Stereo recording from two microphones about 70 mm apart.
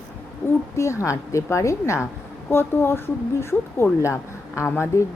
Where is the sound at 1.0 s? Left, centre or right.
Left.